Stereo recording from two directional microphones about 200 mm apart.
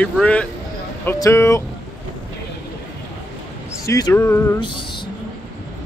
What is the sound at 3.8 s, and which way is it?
Speech, 15° left (ahead or behind).